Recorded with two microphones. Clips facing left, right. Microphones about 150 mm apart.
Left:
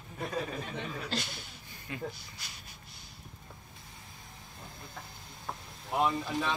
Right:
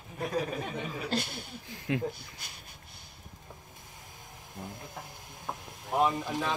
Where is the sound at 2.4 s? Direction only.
55° right (ahead or behind).